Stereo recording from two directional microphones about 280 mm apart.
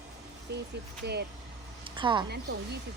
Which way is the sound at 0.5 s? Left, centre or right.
Right.